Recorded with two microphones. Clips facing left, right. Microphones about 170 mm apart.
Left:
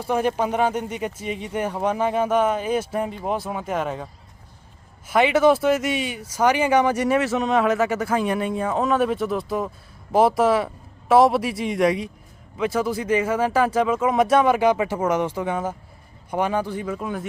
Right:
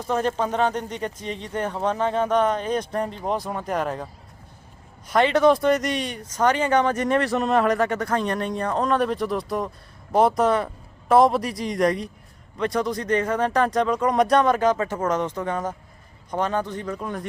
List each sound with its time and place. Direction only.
0.0 s speech: 10° left (ahead or behind)